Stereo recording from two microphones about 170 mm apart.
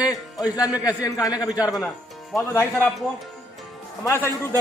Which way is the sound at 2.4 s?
15° left (ahead or behind).